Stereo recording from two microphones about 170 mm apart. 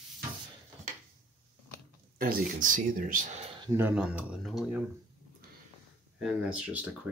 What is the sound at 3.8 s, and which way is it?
Speech, 10° right (ahead or behind).